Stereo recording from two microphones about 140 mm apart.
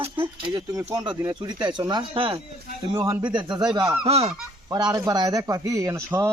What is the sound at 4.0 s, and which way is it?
Speech, 45° right (ahead or behind).